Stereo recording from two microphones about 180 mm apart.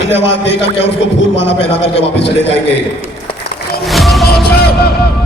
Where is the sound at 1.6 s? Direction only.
35° left (ahead or behind).